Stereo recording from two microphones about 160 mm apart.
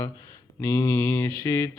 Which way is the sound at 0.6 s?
15° left (ahead or behind).